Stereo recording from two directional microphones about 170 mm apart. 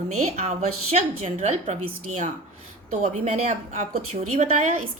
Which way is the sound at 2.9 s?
40° right (ahead or behind).